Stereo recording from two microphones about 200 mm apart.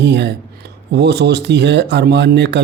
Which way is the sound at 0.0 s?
60° right (ahead or behind).